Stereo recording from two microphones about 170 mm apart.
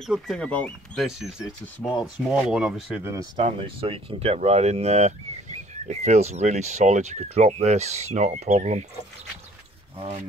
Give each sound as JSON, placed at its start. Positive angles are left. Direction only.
{"t": 0.0, "sound": "speech", "side_deg": 0}
{"t": 3.0, "sound": "speech", "side_deg": -20}
{"t": 3.4, "sound": "speech", "side_deg": -35}
{"t": 9.9, "sound": "speech", "side_deg": -40}